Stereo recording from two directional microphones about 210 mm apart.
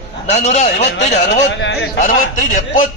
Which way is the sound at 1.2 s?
55° left (ahead or behind).